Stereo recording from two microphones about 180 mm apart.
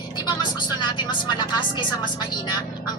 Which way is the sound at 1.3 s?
25° left (ahead or behind).